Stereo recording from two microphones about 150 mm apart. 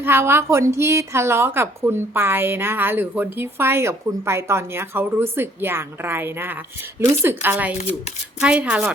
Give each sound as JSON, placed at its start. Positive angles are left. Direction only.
{"t": 0.0, "sound": "a woman's voice", "side_deg": -15}
{"t": 7.8, "sound": "speech", "side_deg": 50}
{"t": 8.4, "sound": "a woman's voice", "side_deg": -5}